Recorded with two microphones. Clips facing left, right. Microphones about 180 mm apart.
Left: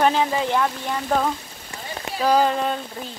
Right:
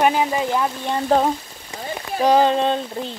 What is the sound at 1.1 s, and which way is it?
Speech, 30° right (ahead or behind).